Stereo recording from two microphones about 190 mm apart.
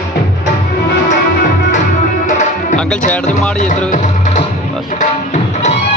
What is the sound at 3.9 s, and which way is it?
Music, 40° left (ahead or behind).